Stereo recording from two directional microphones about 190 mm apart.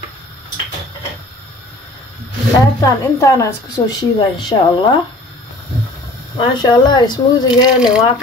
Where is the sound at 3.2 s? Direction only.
15° left (ahead or behind).